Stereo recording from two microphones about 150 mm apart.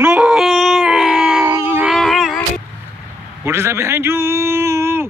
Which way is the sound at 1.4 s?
15° right (ahead or behind).